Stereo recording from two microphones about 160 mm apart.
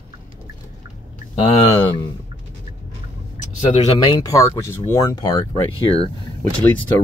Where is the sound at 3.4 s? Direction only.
50° left (ahead or behind).